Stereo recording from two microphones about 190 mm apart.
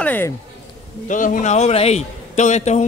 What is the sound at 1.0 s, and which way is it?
A man's voice, 45° left (ahead or behind).